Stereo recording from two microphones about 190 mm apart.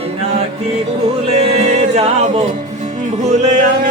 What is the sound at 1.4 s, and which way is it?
Music, 35° right (ahead or behind).